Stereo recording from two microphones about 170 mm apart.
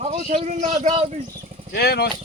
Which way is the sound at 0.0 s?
40° right (ahead or behind).